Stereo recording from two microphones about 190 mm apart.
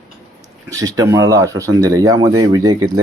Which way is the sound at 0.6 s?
20° right (ahead or behind).